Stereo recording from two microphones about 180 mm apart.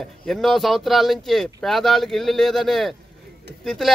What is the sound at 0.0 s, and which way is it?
Speech, centre (ahead or behind).